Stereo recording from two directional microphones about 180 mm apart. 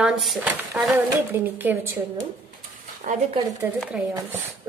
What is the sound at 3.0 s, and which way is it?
Speech, 50° right (ahead or behind).